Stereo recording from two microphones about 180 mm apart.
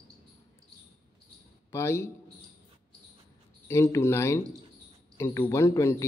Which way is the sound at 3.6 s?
15° left (ahead or behind).